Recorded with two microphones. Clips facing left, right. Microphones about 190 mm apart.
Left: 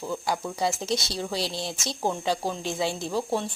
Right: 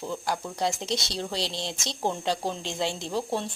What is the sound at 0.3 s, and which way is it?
Speech, 5° left (ahead or behind).